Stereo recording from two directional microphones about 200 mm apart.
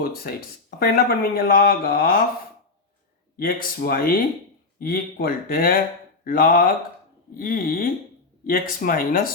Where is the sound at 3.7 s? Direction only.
50° left (ahead or behind).